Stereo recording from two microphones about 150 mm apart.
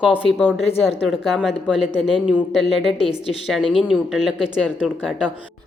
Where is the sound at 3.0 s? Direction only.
40° left (ahead or behind).